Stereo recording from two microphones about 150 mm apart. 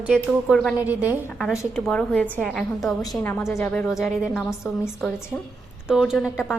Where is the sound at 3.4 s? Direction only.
20° left (ahead or behind).